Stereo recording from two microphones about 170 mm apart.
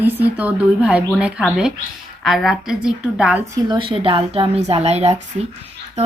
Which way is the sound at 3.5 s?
30° right (ahead or behind).